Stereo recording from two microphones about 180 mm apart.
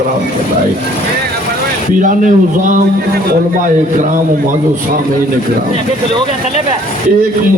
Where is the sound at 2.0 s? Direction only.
45° right (ahead or behind).